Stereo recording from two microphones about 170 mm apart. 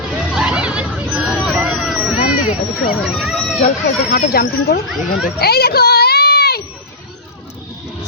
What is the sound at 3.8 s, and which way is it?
Speech, 60° left (ahead or behind).